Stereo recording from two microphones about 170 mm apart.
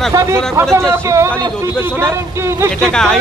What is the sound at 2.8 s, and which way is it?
Speech, 5° left (ahead or behind).